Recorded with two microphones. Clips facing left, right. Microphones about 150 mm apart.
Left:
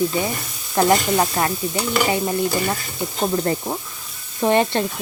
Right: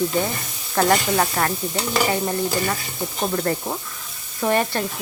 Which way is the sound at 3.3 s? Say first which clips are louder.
Left 2 dB; 20° left (ahead or behind).